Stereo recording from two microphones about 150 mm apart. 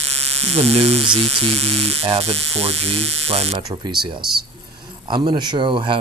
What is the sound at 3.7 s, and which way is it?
Speech, 30° right (ahead or behind).